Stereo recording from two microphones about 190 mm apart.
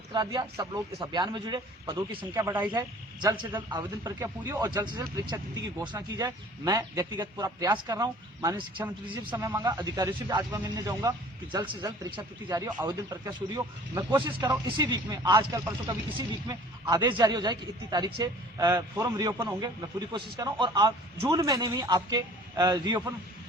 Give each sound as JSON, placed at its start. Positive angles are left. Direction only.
{"t": 0.1, "sound": "speech", "side_deg": -25}
{"t": 3.2, "sound": "speech", "side_deg": -25}
{"t": 9.3, "sound": "speech", "side_deg": -10}